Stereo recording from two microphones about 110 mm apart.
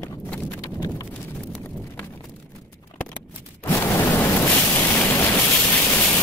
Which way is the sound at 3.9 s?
20° left (ahead or behind).